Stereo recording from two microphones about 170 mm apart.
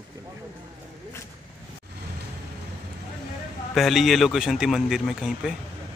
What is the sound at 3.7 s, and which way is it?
Speech, centre (ahead or behind).